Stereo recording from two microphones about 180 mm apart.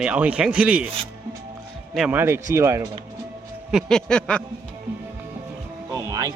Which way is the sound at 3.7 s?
5° left (ahead or behind).